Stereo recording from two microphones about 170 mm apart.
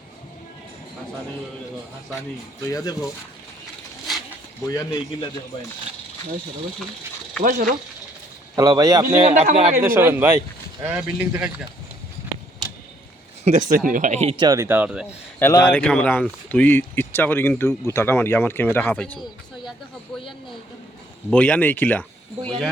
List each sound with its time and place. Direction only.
2.6 s speech: 20° left (ahead or behind)
4.7 s speech: 20° left (ahead or behind)
7.4 s speech: 55° right (ahead or behind)
8.5 s speech: 20° right (ahead or behind)
9.4 s speech: 40° right (ahead or behind)
9.8 s speech: 15° right (ahead or behind)
13.4 s speech: 45° right (ahead or behind)
14.3 s speech: 20° right (ahead or behind)
15.4 s speech: 15° left (ahead or behind)
21.2 s speech: 10° left (ahead or behind)